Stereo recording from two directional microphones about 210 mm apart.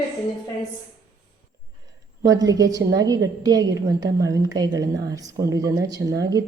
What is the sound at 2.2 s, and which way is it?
A woman's voice, 15° right (ahead or behind).